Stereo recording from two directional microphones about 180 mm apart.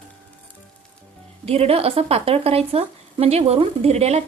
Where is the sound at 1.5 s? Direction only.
35° right (ahead or behind).